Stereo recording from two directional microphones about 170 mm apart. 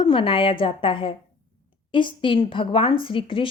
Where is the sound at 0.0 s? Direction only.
30° left (ahead or behind).